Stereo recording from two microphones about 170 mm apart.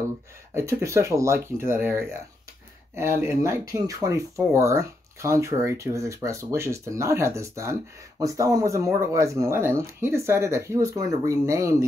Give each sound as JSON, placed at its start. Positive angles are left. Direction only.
{"t": 0.6, "sound": "speech", "side_deg": -15}